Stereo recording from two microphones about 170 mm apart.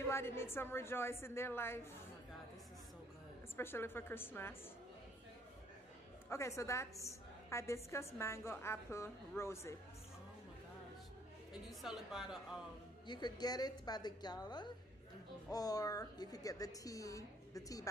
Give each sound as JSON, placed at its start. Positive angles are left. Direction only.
{"t": 0.0, "sound": "a woman's voice", "side_deg": 15}
{"t": 3.5, "sound": "a woman's voice", "side_deg": 15}
{"t": 6.2, "sound": "a woman's voice", "side_deg": 15}
{"t": 11.8, "sound": "a woman's voice", "side_deg": 0}
{"t": 13.0, "sound": "a woman's voice", "side_deg": 25}